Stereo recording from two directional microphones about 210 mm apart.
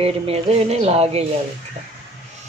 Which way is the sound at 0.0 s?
30° right (ahead or behind).